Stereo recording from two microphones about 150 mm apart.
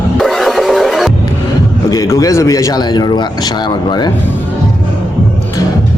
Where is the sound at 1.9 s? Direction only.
20° left (ahead or behind).